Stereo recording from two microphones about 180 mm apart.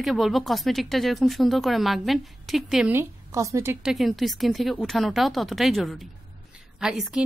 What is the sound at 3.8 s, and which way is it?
Speech, centre (ahead or behind).